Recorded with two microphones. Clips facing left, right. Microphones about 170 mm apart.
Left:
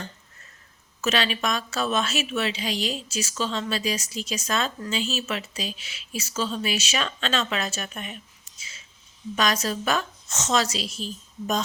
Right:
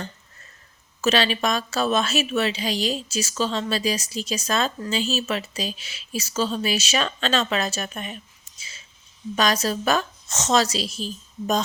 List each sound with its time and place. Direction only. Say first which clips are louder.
1.0 s a woman's voice: right 4 dB; 35° right (ahead or behind)
8.5 s a sound: right 1 dB; 35° right (ahead or behind)
9.3 s a woman's voice: right 3 dB; 35° right (ahead or behind)